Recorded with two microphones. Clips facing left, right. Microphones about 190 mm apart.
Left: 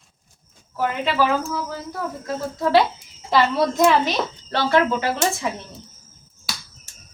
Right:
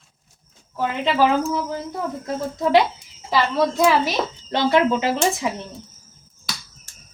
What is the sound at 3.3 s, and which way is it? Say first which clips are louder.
Speech: left 1 dB; centre (ahead or behind).